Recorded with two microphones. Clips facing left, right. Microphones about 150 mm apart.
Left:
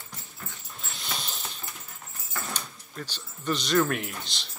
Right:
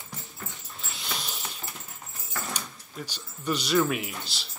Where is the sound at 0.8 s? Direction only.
Centre (ahead or behind).